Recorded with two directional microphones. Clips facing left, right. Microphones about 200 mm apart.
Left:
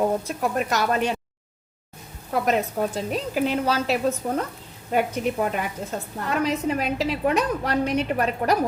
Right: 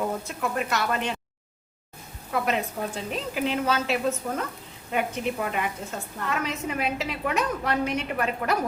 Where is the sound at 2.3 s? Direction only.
40° left (ahead or behind).